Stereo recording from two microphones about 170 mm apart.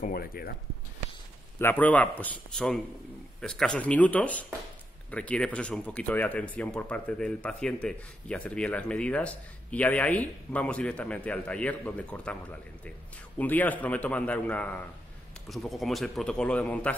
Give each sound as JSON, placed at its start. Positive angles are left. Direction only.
{"t": 0.0, "sound": "speech", "side_deg": 60}
{"t": 1.6, "sound": "speech", "side_deg": 10}